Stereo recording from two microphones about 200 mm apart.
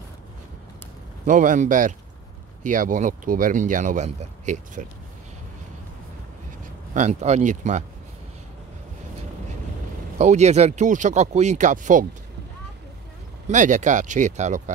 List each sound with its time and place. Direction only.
1.2 s speech: 40° right (ahead or behind)
6.9 s speech: 35° right (ahead or behind)
10.1 s speech: 35° right (ahead or behind)
13.5 s speech: 40° right (ahead or behind)